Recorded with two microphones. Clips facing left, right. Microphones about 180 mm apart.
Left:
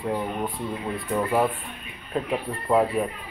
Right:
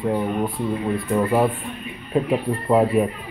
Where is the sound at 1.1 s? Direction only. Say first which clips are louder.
Right 3 dB; 10° right (ahead or behind).